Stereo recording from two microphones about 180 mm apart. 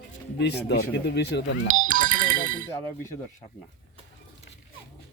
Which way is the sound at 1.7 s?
45° right (ahead or behind).